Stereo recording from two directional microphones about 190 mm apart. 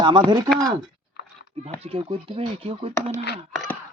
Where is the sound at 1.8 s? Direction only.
30° right (ahead or behind).